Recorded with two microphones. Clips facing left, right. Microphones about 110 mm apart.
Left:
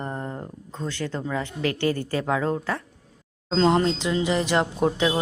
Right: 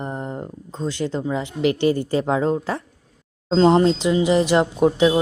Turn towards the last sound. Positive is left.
turn(degrees=-20)  # may be behind; listen again after turning